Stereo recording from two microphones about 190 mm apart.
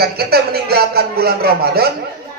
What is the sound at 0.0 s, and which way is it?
A man's voice, 55° right (ahead or behind).